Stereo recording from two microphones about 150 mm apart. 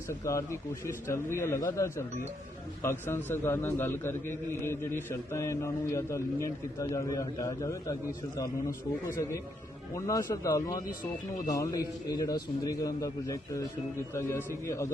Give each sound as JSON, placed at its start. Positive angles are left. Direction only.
{"t": 0.1, "sound": "a man's voice", "side_deg": 20}
{"t": 9.0, "sound": "a man's voice", "side_deg": 20}